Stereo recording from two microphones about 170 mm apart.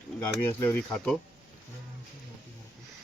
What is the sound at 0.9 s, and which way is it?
Speech, 5° left (ahead or behind).